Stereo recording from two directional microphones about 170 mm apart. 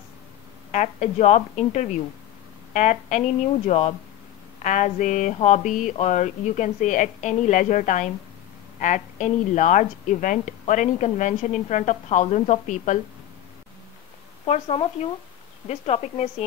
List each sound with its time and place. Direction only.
0.7 s a woman's voice: 45° left (ahead or behind)
14.4 s a woman's voice: 35° left (ahead or behind)